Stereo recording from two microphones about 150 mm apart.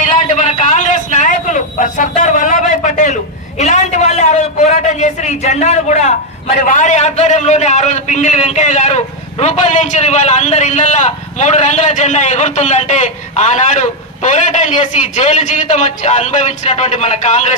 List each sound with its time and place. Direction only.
0.4 s a man's voice: 55° left (ahead or behind)